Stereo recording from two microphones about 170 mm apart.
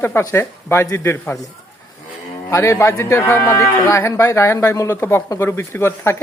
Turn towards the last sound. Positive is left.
turn(degrees=15)  # may be behind; listen again after turning